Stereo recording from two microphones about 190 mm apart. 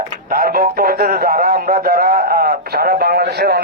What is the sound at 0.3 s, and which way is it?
A man's voice, 50° right (ahead or behind).